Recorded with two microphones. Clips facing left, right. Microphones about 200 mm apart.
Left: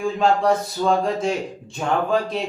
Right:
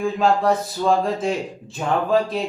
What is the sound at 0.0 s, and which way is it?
Speech, centre (ahead or behind).